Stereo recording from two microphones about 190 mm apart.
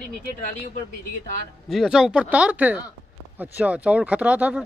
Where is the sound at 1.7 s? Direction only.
Centre (ahead or behind).